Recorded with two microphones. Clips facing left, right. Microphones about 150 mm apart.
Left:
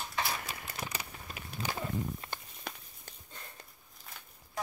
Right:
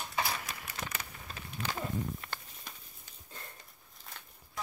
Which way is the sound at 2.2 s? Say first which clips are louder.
Left 1 dB; 30° left (ahead or behind).